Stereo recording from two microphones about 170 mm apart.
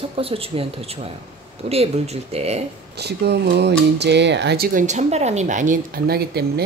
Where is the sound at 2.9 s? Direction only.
75° right (ahead or behind).